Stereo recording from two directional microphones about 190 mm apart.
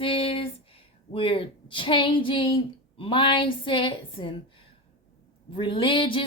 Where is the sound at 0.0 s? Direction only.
25° left (ahead or behind).